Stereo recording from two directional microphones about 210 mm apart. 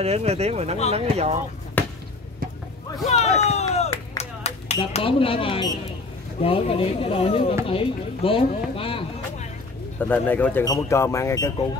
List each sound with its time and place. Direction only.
0.0 s speech: 30° right (ahead or behind)
1.8 s basketball bounce: 10° left (ahead or behind)
3.1 s a sound: 30° left (ahead or behind)
4.2 s clapping: 30° left (ahead or behind)
4.9 s speech: 25° left (ahead or behind)
9.9 s speech: 10° left (ahead or behind)